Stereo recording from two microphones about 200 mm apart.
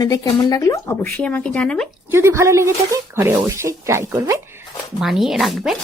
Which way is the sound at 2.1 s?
10° right (ahead or behind).